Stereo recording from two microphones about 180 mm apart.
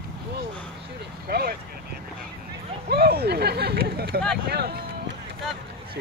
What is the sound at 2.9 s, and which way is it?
Speech, 60° right (ahead or behind).